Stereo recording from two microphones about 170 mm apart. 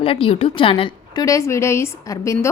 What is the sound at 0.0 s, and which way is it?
A woman's voice, 35° left (ahead or behind).